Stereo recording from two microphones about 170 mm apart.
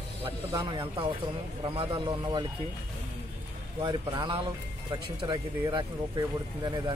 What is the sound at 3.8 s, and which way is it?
Speech, 30° right (ahead or behind).